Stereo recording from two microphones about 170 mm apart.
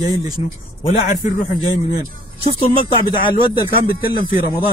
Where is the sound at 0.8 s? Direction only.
45° left (ahead or behind).